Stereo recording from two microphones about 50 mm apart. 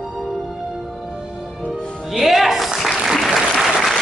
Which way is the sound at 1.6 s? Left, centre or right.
Left.